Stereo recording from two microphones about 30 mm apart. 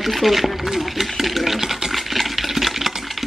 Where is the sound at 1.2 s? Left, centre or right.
Centre.